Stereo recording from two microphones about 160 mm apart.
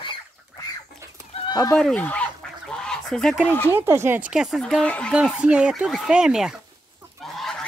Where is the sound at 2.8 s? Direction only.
5° left (ahead or behind).